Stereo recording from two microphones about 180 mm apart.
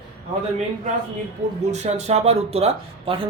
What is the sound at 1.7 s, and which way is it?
Speech, 40° right (ahead or behind).